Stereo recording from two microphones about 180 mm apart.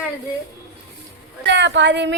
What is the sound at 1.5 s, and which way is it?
Speech, 75° right (ahead or behind).